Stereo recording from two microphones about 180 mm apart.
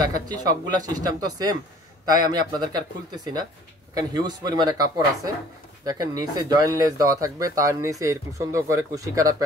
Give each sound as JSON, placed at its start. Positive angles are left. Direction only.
{"t": 0.1, "sound": "speech", "side_deg": -20}
{"t": 3.9, "sound": "speech", "side_deg": -20}